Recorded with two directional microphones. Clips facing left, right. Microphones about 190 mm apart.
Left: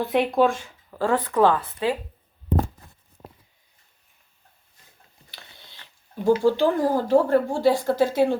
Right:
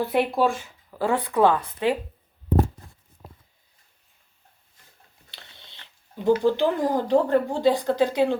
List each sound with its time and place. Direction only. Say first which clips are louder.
0.0 s speech: left 2 dB; 5° right (ahead or behind)
5.3 s a sound: left 1 dB; 25° right (ahead or behind)
6.4 s a woman's voice: left 2 dB; 20° right (ahead or behind)